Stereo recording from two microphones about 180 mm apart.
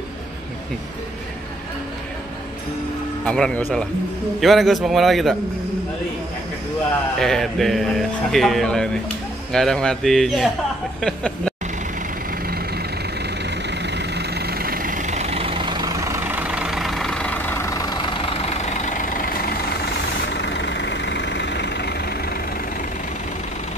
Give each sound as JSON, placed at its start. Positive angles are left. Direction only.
{"t": 3.3, "sound": "a man's voice", "side_deg": 5}
{"t": 7.2, "sound": "a man's voice", "side_deg": 0}
{"t": 11.0, "sound": "a sound", "side_deg": 5}
{"t": 12.4, "sound": "vehicle", "side_deg": -60}
{"t": 13.7, "sound": "vehicle", "side_deg": -70}
{"t": 18.0, "sound": "vehicle", "side_deg": 30}
{"t": 18.6, "sound": "vehicle", "side_deg": 40}
{"t": 20.3, "sound": "vehicle", "side_deg": 75}